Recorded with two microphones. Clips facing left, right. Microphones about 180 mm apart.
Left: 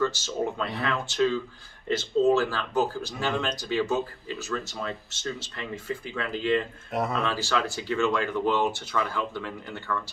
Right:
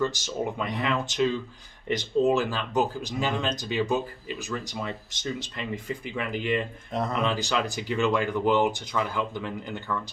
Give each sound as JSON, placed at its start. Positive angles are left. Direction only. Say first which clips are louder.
{"t": 0.0, "sound": "speech", "louder": "left 1 dB", "side_deg": -15}